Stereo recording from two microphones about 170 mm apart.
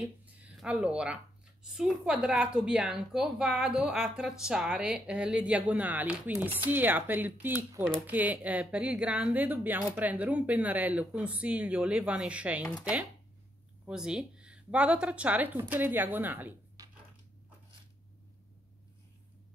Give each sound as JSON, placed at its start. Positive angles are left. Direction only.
{"t": 0.0, "sound": "speech", "side_deg": -5}
{"t": 13.8, "sound": "speech", "side_deg": -5}
{"t": 16.8, "sound": "a sound", "side_deg": -20}